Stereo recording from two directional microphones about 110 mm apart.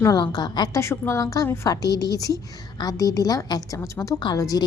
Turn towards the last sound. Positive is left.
turn(degrees=35)  # may be behind; listen again after turning